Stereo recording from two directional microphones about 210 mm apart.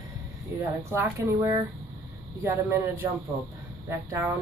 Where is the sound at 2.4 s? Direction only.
10° right (ahead or behind).